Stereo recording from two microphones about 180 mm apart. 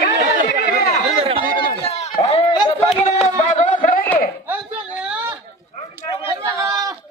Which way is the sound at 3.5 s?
45° left (ahead or behind).